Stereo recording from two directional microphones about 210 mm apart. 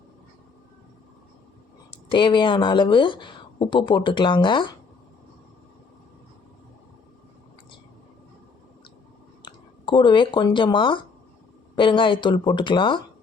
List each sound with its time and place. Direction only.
2.0 s speech: 20° left (ahead or behind)
9.4 s speech: 20° left (ahead or behind)